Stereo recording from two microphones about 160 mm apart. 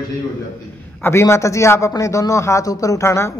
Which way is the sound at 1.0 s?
15° left (ahead or behind).